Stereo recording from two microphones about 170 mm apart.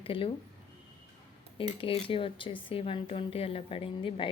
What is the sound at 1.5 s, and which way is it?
Speech, 30° left (ahead or behind).